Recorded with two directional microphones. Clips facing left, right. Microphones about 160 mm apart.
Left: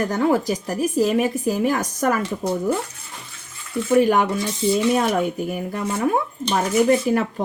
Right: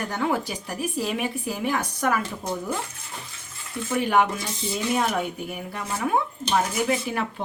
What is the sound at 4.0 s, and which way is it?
A woman's voice, 40° left (ahead or behind).